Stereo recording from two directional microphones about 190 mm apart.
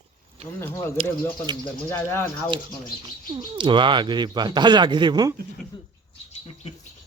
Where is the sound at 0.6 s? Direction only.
15° left (ahead or behind).